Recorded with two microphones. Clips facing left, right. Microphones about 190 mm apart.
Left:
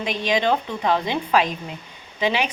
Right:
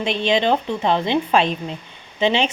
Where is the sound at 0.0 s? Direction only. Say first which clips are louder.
Right 3 dB; 25° right (ahead or behind).